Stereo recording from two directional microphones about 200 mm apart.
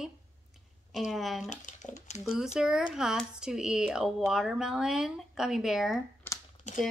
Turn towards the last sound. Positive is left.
turn(degrees=35)  # may be behind; listen again after turning